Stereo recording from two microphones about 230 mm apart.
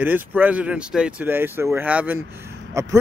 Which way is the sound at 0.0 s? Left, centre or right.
Centre.